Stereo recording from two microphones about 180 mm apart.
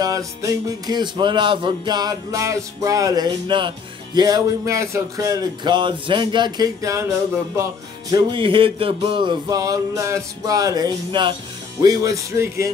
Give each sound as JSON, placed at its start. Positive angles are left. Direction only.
{"t": 0.0, "sound": "speech", "side_deg": -20}
{"t": 8.1, "sound": "speech", "side_deg": -25}
{"t": 11.8, "sound": "music", "side_deg": -20}